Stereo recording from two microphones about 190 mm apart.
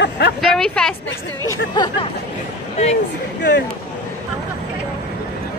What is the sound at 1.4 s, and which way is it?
Speech, 20° left (ahead or behind).